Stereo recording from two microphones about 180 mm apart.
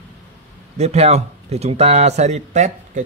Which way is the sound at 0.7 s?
35° right (ahead or behind).